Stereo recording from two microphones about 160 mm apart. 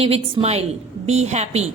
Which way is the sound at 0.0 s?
40° right (ahead or behind).